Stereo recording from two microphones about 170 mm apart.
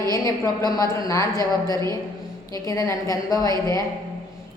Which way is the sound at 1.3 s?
25° right (ahead or behind).